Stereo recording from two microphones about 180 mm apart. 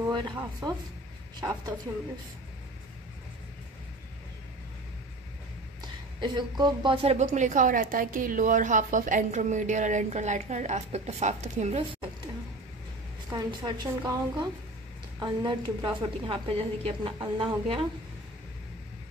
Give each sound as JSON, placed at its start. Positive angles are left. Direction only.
{"t": 1.4, "sound": "speech", "side_deg": -20}
{"t": 5.8, "sound": "a woman's voice", "side_deg": -25}
{"t": 13.3, "sound": "a woman's voice", "side_deg": -25}